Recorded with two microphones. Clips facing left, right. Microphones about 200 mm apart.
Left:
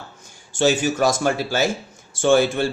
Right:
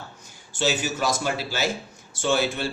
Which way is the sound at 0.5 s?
50° left (ahead or behind).